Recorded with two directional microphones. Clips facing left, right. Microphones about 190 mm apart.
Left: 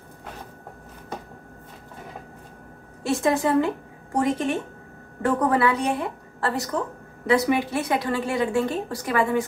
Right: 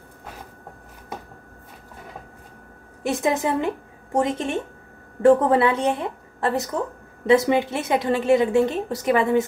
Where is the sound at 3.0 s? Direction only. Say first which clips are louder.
Even; 20° right (ahead or behind).